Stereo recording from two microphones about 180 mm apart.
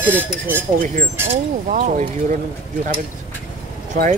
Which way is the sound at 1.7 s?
45° right (ahead or behind).